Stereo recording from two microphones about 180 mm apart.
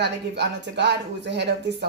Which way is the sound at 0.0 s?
70° right (ahead or behind).